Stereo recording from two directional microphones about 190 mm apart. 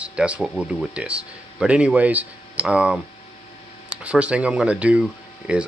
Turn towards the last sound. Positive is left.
turn(degrees=-5)  # may be behind; listen again after turning